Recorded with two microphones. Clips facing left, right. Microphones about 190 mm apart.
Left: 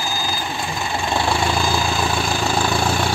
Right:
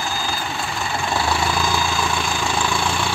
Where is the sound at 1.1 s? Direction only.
25° left (ahead or behind).